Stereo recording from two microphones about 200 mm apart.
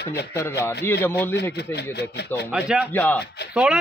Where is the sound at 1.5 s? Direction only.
55° left (ahead or behind).